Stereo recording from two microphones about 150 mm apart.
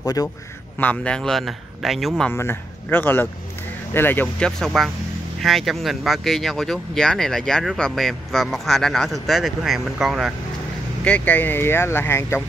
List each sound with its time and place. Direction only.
0.0 s a man's voice: 25° left (ahead or behind)
0.7 s speech: 10° left (ahead or behind)
2.3 s speech: 15° left (ahead or behind); by 10.3 s centre (ahead or behind)
11.1 s speech: 10° left (ahead or behind)